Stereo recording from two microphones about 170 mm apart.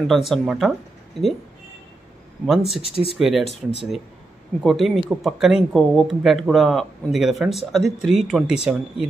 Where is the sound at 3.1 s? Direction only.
Centre (ahead or behind).